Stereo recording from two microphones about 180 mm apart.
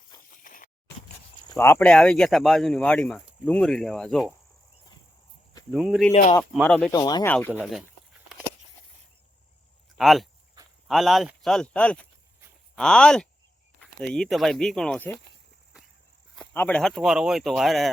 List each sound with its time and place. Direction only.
0.4 s a sound: 50° left (ahead or behind)
1.5 s speech: 15° left (ahead or behind)
5.7 s speech: 5° right (ahead or behind)
6.9 s speech: 20° left (ahead or behind)
7.6 s speech: centre (ahead or behind)
10.0 s speech: centre (ahead or behind)
16.3 s speech: 5° left (ahead or behind)